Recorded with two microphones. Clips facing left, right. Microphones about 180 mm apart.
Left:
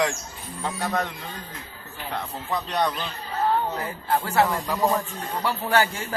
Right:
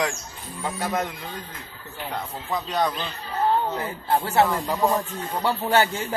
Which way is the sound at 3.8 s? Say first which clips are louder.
Right 1 dB; 25° right (ahead or behind).